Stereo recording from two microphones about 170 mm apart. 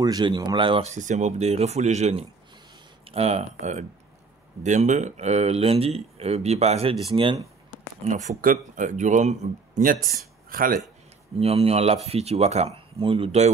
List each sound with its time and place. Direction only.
0.0 s speech: 25° right (ahead or behind)
0.9 s speech: 45° right (ahead or behind)
8.0 s speech: 45° right (ahead or behind)
10.5 s speech: 55° right (ahead or behind)
11.3 s speech: 35° right (ahead or behind)